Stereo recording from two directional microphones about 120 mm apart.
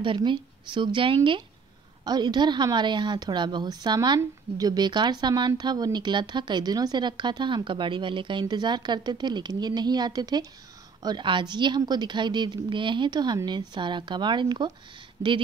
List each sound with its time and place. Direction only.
0.0 s a woman's voice: 45° right (ahead or behind)